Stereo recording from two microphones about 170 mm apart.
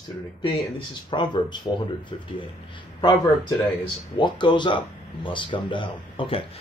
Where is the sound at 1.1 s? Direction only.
25° left (ahead or behind).